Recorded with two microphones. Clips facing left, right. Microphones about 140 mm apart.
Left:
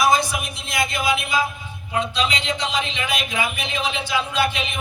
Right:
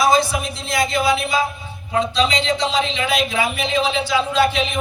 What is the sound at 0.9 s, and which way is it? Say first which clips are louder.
Speech: right 3 dB; 30° right (ahead or behind).